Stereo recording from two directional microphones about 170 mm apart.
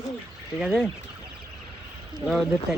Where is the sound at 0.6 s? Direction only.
5° right (ahead or behind).